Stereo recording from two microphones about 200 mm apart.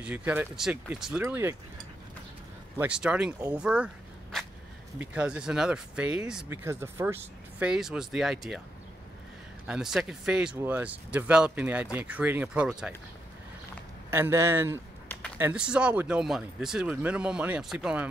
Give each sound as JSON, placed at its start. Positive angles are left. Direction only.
{"t": 0.0, "sound": "speech", "side_deg": -10}
{"t": 2.8, "sound": "speech", "side_deg": -5}
{"t": 9.7, "sound": "speech", "side_deg": 0}
{"t": 14.1, "sound": "speech", "side_deg": -15}